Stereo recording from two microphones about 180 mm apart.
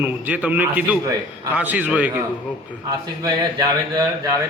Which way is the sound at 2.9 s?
20° right (ahead or behind).